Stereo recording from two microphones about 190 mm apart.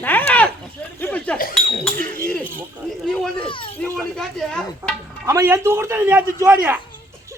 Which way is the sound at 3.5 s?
25° left (ahead or behind).